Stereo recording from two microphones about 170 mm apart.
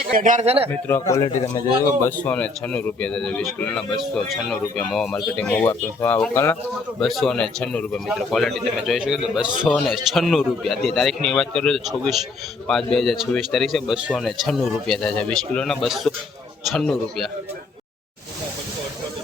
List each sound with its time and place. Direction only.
0.1 s speech: 50° right (ahead or behind)
0.7 s a man's voice: 15° left (ahead or behind)
7.0 s a man's voice: centre (ahead or behind)